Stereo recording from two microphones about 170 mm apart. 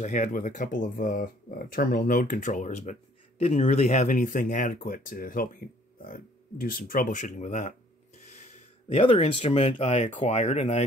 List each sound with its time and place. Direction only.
0.0 s speech: 45° left (ahead or behind)
8.3 s a sound: 45° left (ahead or behind)
9.0 s speech: 35° left (ahead or behind)